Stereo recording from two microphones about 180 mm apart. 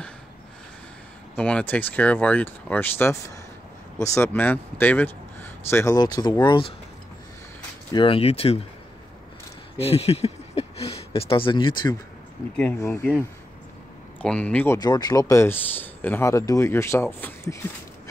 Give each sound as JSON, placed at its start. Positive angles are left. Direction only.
{"t": 1.3, "sound": "speech", "side_deg": 5}
{"t": 7.9, "sound": "speech", "side_deg": 30}
{"t": 9.8, "sound": "speech", "side_deg": 35}
{"t": 12.5, "sound": "speech", "side_deg": 10}
{"t": 14.2, "sound": "speech", "side_deg": 5}
{"t": 14.8, "sound": "speech", "side_deg": 20}